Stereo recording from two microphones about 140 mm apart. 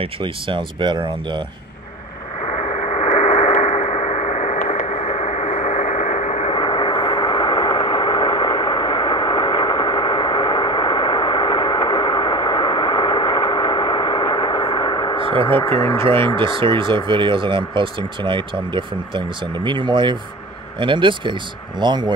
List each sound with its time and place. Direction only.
0.0 s speech: 35° right (ahead or behind)
2.5 s radio: 50° left (ahead or behind)
6.5 s vehicle: 35° left (ahead or behind)
15.5 s speech: 15° left (ahead or behind)
16.3 s speech: 35° right (ahead or behind)